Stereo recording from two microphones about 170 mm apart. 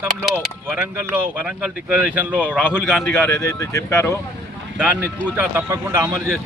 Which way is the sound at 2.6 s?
15° left (ahead or behind).